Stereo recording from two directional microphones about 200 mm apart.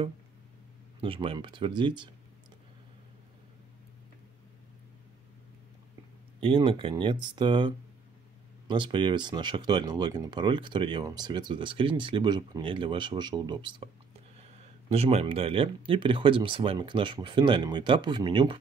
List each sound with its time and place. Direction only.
1.0 s speech: 25° right (ahead or behind)
6.4 s speech: 25° right (ahead or behind)